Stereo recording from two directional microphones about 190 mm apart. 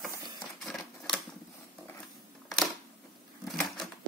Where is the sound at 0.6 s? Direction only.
Centre (ahead or behind).